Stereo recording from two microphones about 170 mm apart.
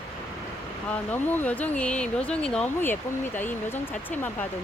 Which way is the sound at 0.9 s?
10° left (ahead or behind).